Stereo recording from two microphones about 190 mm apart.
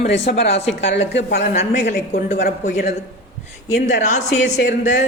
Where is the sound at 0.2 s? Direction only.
35° left (ahead or behind).